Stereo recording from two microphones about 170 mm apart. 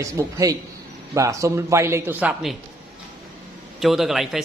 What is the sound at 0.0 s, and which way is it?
Speech, 20° right (ahead or behind).